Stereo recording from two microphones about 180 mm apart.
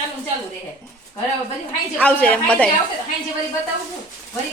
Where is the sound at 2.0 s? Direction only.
5° left (ahead or behind).